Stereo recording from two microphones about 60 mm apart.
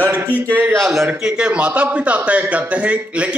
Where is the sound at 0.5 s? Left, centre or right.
Right.